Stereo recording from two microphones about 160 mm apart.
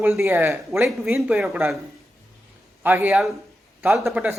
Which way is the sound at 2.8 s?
10° right (ahead or behind).